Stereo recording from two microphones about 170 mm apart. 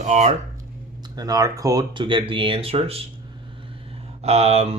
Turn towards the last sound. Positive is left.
turn(degrees=-40)  # may be behind; listen again after turning